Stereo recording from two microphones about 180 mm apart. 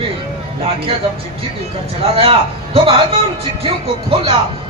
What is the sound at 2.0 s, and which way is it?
A man's voice, 30° right (ahead or behind).